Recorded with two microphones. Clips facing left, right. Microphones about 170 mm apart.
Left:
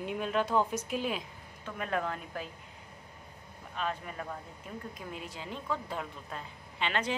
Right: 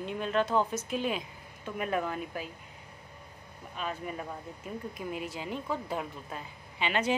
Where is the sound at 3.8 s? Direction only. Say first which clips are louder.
Even; 10° right (ahead or behind).